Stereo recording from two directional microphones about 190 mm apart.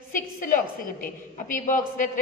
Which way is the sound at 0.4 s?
45° left (ahead or behind).